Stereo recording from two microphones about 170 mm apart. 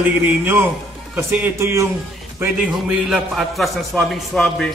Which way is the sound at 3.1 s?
Centre (ahead or behind).